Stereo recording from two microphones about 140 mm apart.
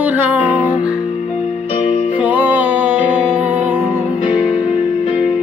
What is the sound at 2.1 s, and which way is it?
Music, 10° right (ahead or behind).